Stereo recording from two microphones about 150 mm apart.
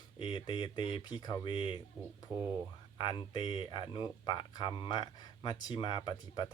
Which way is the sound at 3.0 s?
30° left (ahead or behind).